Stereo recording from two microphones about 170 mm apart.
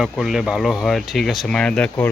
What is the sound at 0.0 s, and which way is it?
Speech, centre (ahead or behind).